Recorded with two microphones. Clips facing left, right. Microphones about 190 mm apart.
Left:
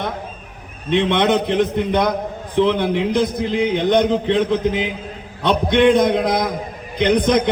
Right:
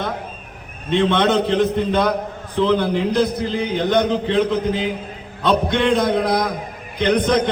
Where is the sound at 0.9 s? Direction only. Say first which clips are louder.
Even; 15° left (ahead or behind).